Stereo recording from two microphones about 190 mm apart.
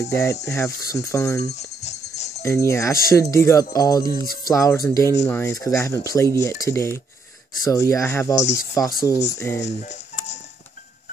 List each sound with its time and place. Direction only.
0.1 s speech: 15° left (ahead or behind)
1.5 s music: 35° left (ahead or behind)
2.4 s speech: 15° left (ahead or behind)
9.6 s a sound: 35° left (ahead or behind)